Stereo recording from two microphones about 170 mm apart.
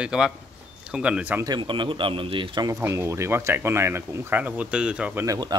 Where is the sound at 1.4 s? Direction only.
25° right (ahead or behind); by 5.2 s 5° right (ahead or behind).